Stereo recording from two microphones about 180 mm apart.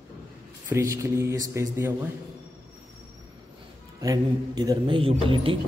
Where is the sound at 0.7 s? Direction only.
15° right (ahead or behind).